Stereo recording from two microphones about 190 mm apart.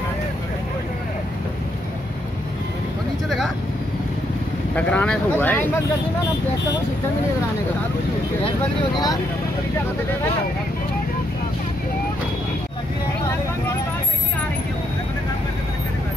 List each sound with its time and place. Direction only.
3.3 s vehicle: centre (ahead or behind)
4.7 s speech: 5° left (ahead or behind)
8.9 s speech: 20° left (ahead or behind)